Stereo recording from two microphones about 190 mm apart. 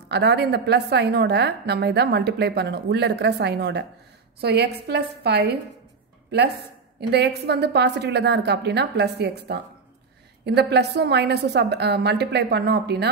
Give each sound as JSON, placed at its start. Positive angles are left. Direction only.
{"t": 0.1, "sound": "a woman's voice", "side_deg": -60}
{"t": 7.0, "sound": "a woman's voice", "side_deg": -60}